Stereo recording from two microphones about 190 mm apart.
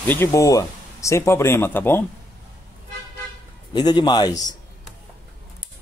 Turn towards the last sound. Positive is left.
turn(degrees=20)  # may be behind; listen again after turning